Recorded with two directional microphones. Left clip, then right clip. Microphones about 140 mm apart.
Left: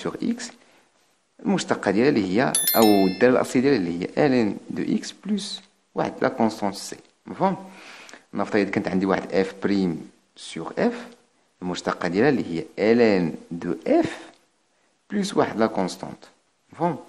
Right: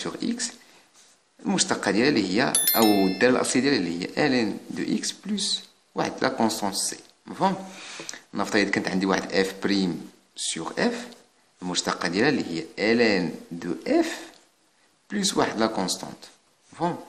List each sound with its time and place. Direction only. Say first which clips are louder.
0.0 s speech: left 1 dB; 35° left (ahead or behind)
2.8 s speech: left 3 dB; centre (ahead or behind)
3.2 s speech: left 2 dB; 35° left (ahead or behind)